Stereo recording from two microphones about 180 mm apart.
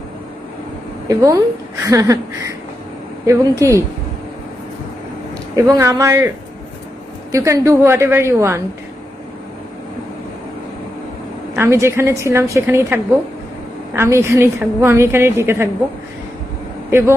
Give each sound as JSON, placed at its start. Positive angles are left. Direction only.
{"t": 1.0, "sound": "a woman's voice", "side_deg": -20}
{"t": 5.5, "sound": "a woman's voice", "side_deg": -15}
{"t": 11.5, "sound": "a woman's voice", "side_deg": -15}